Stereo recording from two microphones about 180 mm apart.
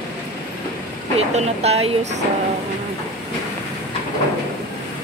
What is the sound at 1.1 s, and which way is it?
Speech, 35° right (ahead or behind).